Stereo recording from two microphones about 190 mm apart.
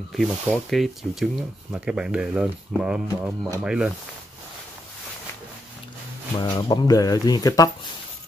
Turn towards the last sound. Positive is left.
turn(degrees=20)  # may be behind; listen again after turning